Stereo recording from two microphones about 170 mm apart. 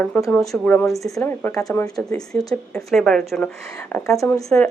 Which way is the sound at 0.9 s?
20° left (ahead or behind).